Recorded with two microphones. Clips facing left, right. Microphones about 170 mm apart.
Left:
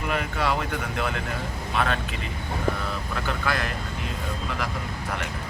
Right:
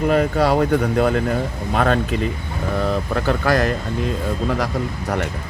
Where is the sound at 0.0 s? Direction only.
40° right (ahead or behind).